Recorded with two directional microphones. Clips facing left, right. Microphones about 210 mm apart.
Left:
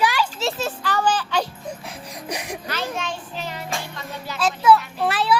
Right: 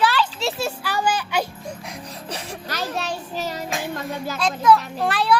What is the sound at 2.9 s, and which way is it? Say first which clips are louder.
Child singing: right 2 dB; 40° right (ahead or behind).